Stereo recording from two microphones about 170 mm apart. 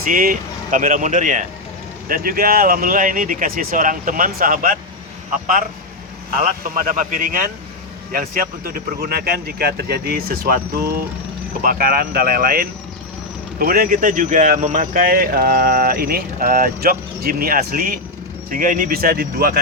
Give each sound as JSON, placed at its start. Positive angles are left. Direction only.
{"t": 0.0, "sound": "speech", "side_deg": -55}
{"t": 6.4, "sound": "speech", "side_deg": -50}